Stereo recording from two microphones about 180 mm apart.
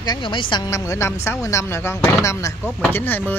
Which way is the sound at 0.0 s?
25° left (ahead or behind).